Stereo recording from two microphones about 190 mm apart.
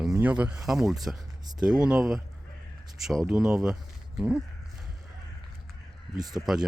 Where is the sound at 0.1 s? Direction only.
10° right (ahead or behind).